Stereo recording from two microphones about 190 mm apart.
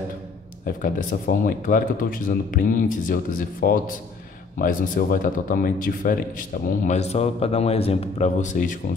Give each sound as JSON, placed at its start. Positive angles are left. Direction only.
{"t": 0.8, "sound": "speech", "side_deg": 45}